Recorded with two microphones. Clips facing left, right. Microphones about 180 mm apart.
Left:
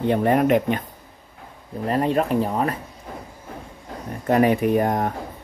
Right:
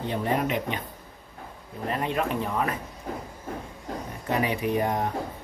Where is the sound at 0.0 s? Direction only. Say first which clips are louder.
Left 8 dB; 60° left (ahead or behind).